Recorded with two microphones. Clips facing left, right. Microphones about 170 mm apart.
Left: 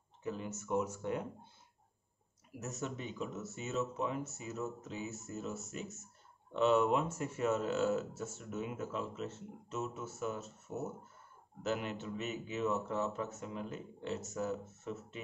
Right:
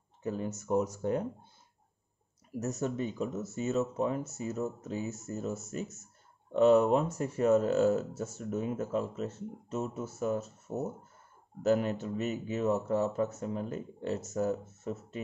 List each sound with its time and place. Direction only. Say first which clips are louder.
0.2 s speech: right 6 dB; 40° right (ahead or behind)
2.5 s speech: right 8 dB; 40° right (ahead or behind)